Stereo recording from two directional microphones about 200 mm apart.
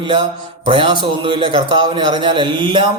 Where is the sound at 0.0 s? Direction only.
25° right (ahead or behind).